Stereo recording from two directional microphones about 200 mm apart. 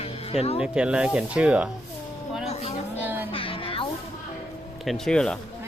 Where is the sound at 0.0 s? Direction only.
30° left (ahead or behind).